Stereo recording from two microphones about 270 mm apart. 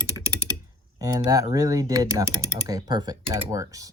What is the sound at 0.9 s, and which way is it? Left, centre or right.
Speech, centre.